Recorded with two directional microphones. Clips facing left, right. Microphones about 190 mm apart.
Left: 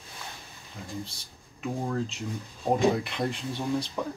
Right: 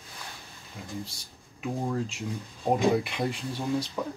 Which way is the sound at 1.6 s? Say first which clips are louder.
Even; 5° right (ahead or behind).